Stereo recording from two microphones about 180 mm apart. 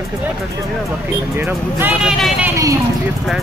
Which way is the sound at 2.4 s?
15° right (ahead or behind).